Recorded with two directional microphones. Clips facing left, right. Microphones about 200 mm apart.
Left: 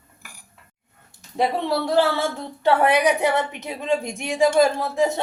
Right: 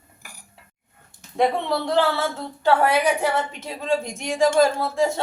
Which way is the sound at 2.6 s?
20° left (ahead or behind).